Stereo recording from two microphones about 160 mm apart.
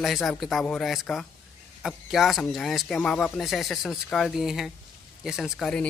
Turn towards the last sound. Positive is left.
turn(degrees=0)  # may be behind; listen again after turning